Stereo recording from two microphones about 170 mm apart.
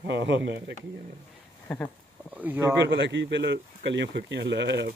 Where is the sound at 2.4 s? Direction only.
10° right (ahead or behind).